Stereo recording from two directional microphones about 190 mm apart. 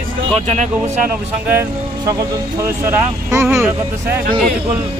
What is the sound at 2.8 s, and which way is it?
Speech, 15° right (ahead or behind).